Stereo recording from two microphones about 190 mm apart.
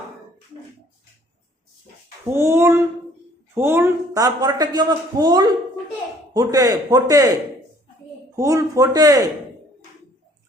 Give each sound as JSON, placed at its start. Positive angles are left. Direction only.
{"t": 2.3, "sound": "a man's voice", "side_deg": -15}
{"t": 8.4, "sound": "speech", "side_deg": -15}